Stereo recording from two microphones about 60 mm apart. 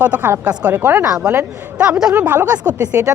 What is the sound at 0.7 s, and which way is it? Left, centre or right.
Speech, right.